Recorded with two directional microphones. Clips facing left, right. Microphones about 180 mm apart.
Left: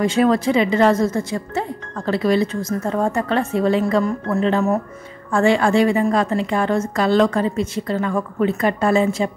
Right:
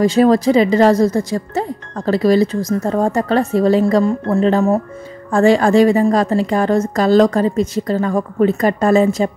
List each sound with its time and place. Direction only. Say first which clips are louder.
0.0 s a woman's voice: right 5 dB; 35° right (ahead or behind)